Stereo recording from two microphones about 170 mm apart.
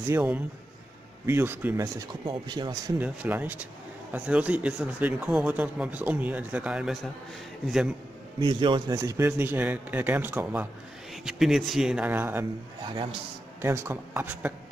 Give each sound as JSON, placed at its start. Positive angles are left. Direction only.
{"t": 0.0, "sound": "speech", "side_deg": -10}
{"t": 3.0, "sound": "speech", "side_deg": -10}
{"t": 8.4, "sound": "speech", "side_deg": -25}
{"t": 12.8, "sound": "speech", "side_deg": -30}
{"t": 13.6, "sound": "speech", "side_deg": -15}